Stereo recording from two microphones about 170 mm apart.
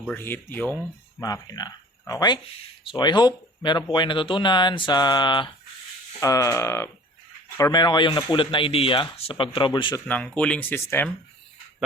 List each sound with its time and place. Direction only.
0.0 s speech: 10° left (ahead or behind)
1.2 s speech: 20° left (ahead or behind)
10.1 s speech: 10° left (ahead or behind)